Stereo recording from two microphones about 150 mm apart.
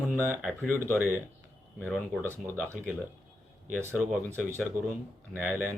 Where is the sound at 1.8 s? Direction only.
15° right (ahead or behind).